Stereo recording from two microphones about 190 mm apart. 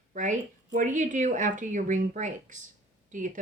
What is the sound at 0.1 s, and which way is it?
A woman's voice, 40° right (ahead or behind).